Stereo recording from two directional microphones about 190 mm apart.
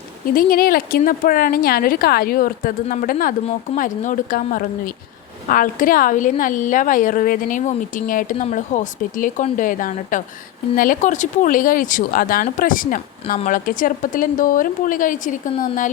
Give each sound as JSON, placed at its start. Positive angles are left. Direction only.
{"t": 0.3, "sound": "speech", "side_deg": 50}